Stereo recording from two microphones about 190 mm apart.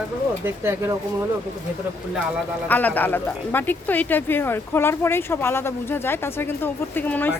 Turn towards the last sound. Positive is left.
turn(degrees=10)  # may be behind; listen again after turning